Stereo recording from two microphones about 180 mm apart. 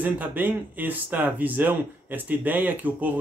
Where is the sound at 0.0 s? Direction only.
10° right (ahead or behind).